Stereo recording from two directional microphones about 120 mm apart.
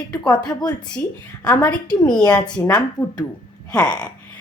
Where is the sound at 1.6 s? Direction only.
35° left (ahead or behind).